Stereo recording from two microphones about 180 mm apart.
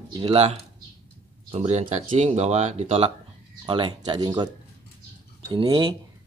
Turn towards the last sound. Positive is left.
turn(degrees=-30)  # may be behind; listen again after turning